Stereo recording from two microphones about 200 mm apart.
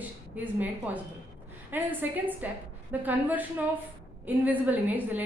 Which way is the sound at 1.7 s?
10° right (ahead or behind).